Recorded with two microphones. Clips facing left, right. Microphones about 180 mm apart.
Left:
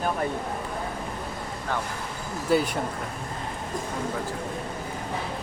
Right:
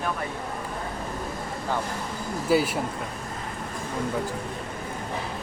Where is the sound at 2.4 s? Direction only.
5° right (ahead or behind).